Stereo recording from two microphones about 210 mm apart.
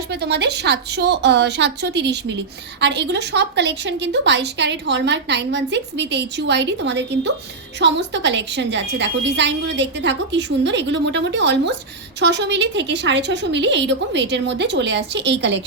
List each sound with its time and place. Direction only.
0.1 s a woman's voice: 50° right (ahead or behind)